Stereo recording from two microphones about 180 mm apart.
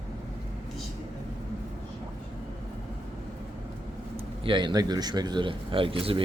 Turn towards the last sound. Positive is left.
turn(degrees=-30)  # may be behind; listen again after turning